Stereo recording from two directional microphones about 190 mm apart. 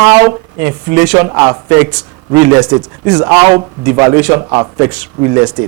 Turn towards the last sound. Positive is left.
turn(degrees=-15)  # may be behind; listen again after turning